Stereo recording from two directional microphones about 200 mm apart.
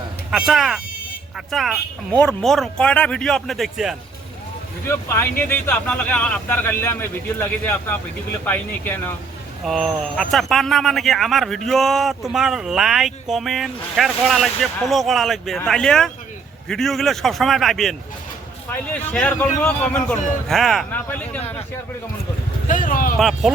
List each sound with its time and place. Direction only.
0.3 s speech: centre (ahead or behind)
4.9 s speech: 10° left (ahead or behind)
22.6 s speech: 40° left (ahead or behind)
23.1 s speech: centre (ahead or behind)